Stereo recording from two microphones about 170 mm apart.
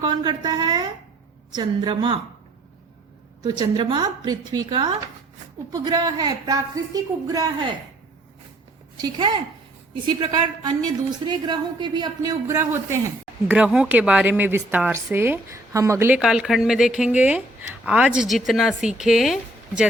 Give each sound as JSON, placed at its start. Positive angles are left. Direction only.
{"t": 0.0, "sound": "a woman's voice", "side_deg": -25}
{"t": 3.6, "sound": "a woman's voice", "side_deg": -25}
{"t": 9.0, "sound": "a woman's voice", "side_deg": -25}